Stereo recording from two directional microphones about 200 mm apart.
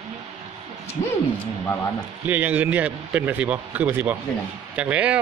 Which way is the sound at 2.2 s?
10° right (ahead or behind).